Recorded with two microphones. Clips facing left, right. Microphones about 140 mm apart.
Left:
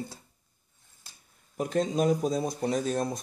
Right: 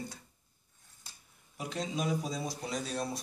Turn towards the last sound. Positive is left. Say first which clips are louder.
# left 7 dB
turn(degrees=45)  # may be behind; listen again after turning